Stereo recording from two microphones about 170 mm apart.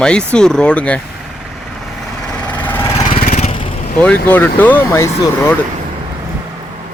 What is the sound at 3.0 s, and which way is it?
Lawn mower, 35° left (ahead or behind).